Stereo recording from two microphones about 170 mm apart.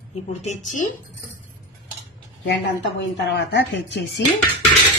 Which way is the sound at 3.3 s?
85° left.